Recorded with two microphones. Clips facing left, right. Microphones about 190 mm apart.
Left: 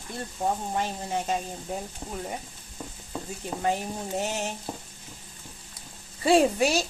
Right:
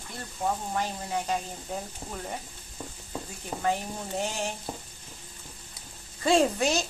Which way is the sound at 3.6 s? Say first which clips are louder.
Left 1 dB; 20° left (ahead or behind).